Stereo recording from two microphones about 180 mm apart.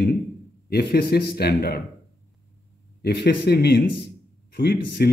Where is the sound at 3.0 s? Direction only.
65° left (ahead or behind).